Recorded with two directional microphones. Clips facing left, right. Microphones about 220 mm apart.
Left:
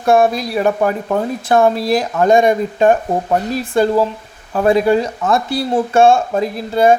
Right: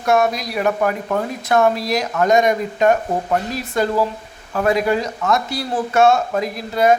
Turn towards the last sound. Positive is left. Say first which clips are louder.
# left 3 dB
turn(degrees=30)  # may be behind; listen again after turning